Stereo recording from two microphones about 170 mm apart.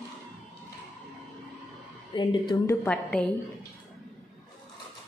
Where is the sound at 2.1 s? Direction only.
25° left (ahead or behind).